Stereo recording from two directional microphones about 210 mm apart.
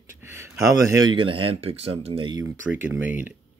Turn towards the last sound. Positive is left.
turn(degrees=-10)  # may be behind; listen again after turning